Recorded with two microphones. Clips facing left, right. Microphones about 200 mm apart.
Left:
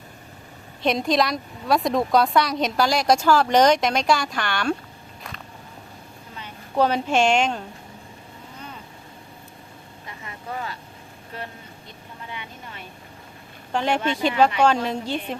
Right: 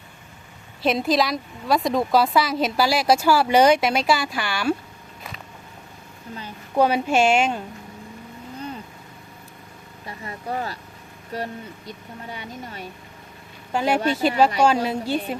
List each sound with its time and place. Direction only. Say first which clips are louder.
0.8 s a woman's voice: right 1 dB; 5° right (ahead or behind)
6.7 s a woman's voice: right 1 dB; 10° right (ahead or behind)
10.1 s vehicle: right 5 dB; 40° right (ahead or behind)
11.3 s speech: right 7 dB; 40° right (ahead or behind)
13.7 s a woman's voice: right 2 dB; 5° right (ahead or behind)
14.0 s speech: right 1 dB; 40° right (ahead or behind)
14.8 s a woman's voice: right 2 dB; 5° right (ahead or behind)